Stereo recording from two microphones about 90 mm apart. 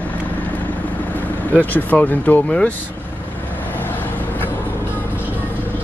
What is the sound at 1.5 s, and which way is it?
Speech, 20° left (ahead or behind).